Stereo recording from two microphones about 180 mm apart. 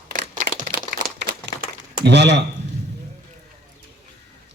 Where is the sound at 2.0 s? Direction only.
70° right (ahead or behind).